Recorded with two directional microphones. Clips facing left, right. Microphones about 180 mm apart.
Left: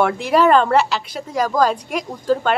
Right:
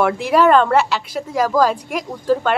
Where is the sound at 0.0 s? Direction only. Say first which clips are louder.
Right 1 dB; centre (ahead or behind).